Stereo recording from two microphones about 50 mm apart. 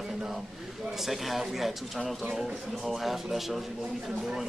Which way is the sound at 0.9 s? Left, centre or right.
Centre.